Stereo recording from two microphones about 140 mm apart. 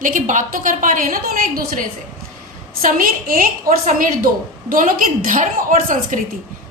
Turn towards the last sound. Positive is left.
turn(degrees=-70)  # may be behind; listen again after turning